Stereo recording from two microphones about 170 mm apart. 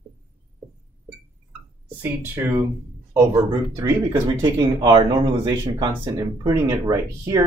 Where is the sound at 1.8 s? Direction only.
10° right (ahead or behind).